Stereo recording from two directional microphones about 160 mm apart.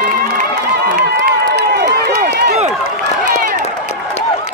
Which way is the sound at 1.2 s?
85° right.